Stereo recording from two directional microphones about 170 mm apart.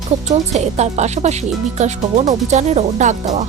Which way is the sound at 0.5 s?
40° right (ahead or behind).